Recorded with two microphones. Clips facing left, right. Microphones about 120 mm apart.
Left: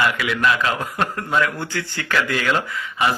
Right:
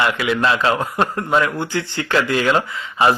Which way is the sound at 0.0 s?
25° right (ahead or behind).